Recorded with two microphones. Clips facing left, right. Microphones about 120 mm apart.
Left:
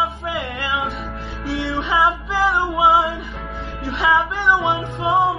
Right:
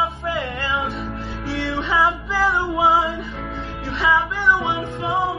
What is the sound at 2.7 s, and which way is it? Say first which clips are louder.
Music: left 2 dB; 20° left (ahead or behind).